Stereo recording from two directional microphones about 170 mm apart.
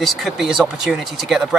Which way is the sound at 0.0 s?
Centre (ahead or behind).